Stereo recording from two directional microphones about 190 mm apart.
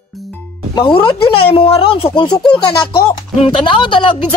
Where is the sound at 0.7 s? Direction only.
25° left (ahead or behind).